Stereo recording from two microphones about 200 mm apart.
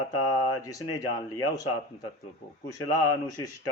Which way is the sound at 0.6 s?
15° left (ahead or behind).